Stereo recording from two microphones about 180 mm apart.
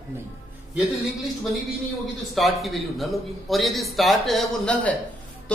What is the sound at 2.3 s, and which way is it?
A man's voice, centre (ahead or behind).